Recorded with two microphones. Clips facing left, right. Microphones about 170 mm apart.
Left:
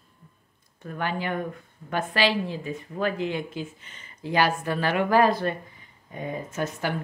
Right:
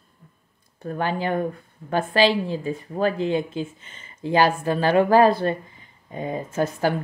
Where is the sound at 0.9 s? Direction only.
35° right (ahead or behind).